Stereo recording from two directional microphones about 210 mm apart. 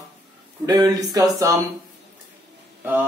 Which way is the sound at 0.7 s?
15° right (ahead or behind).